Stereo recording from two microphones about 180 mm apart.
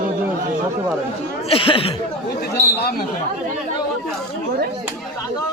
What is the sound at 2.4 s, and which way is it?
Chatter, 60° left (ahead or behind).